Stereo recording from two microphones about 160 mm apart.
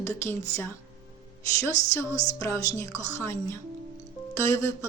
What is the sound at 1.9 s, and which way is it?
A woman's voice, 20° left (ahead or behind).